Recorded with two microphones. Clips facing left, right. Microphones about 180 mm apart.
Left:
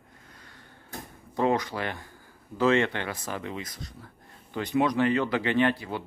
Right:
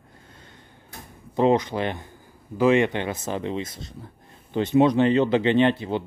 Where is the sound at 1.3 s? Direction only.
20° right (ahead or behind).